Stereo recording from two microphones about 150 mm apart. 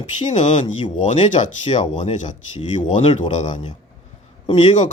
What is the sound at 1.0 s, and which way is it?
Speech, 55° left (ahead or behind).